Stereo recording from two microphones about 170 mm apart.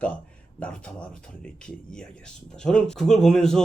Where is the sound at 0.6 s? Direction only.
5° left (ahead or behind).